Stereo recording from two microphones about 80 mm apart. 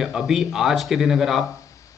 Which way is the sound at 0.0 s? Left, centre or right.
Centre.